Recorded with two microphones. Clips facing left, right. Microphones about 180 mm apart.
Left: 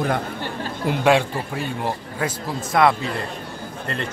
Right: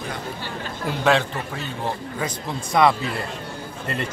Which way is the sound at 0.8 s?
10° left (ahead or behind).